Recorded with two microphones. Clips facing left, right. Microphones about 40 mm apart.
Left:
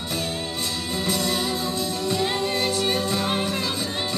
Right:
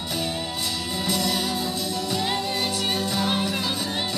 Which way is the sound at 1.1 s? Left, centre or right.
Left.